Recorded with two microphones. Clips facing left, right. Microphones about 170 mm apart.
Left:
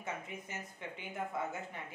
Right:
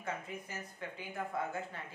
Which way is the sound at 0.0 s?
20° left (ahead or behind).